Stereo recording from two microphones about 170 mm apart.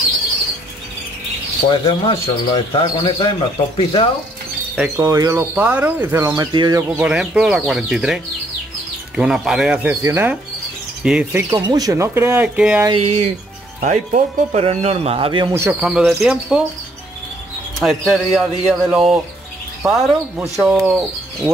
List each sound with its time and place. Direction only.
1.7 s speech: 30° left (ahead or behind)
4.9 s speech: 20° right (ahead or behind)
5.5 s speech: 10° right (ahead or behind); by 6.8 s 25° right (ahead or behind)
7.0 s speech: 5° right (ahead or behind)
11.5 s speech: 25° right (ahead or behind); by 12.8 s 10° right (ahead or behind)
12.9 s speech: 45° right (ahead or behind)
15.5 s speech: 10° right (ahead or behind)
17.7 s speech: centre (ahead or behind)